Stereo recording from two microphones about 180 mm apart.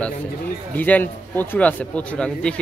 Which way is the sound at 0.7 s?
10° left (ahead or behind).